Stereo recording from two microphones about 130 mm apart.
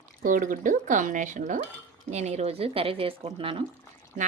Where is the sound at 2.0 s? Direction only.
60° right (ahead or behind); by 3.6 s 40° right (ahead or behind).